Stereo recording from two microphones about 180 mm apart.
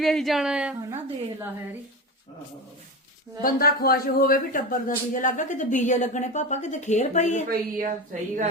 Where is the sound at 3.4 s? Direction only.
55° left (ahead or behind); by 7.4 s 40° left (ahead or behind).